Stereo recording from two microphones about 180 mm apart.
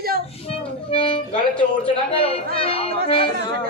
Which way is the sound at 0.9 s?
30° left (ahead or behind).